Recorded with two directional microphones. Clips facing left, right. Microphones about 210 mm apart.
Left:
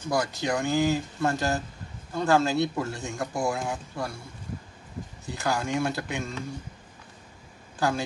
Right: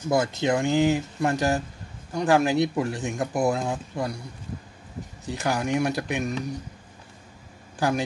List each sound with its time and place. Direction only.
0.1 s speech: 25° right (ahead or behind)
5.2 s speech: 20° right (ahead or behind)